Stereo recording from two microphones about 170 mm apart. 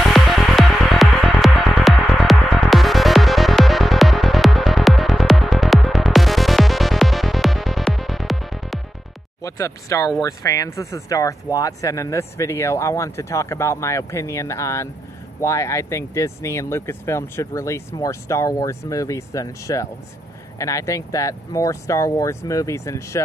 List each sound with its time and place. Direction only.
0.0 s music: centre (ahead or behind)
9.4 s speech: 20° left (ahead or behind)